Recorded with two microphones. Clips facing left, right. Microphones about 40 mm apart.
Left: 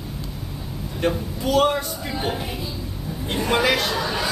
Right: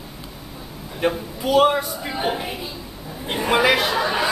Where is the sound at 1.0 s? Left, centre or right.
Centre.